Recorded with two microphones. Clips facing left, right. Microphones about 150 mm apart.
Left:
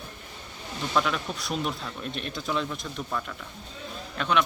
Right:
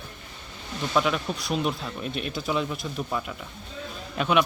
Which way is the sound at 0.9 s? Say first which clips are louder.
Right 2 dB; 5° right (ahead or behind).